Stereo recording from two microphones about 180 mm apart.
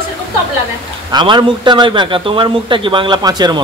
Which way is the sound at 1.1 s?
25° right (ahead or behind).